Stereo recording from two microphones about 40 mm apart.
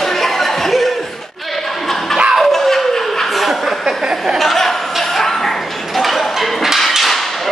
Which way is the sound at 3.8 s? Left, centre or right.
Centre.